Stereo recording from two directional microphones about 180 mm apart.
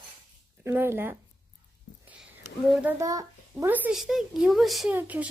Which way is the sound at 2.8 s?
20° right (ahead or behind).